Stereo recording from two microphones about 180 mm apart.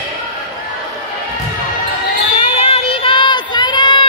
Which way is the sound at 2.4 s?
35° left (ahead or behind).